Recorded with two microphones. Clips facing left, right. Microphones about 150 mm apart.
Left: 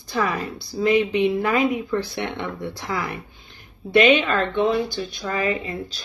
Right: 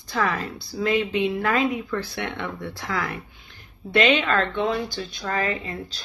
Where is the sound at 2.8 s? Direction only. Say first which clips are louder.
Even; 15° left (ahead or behind).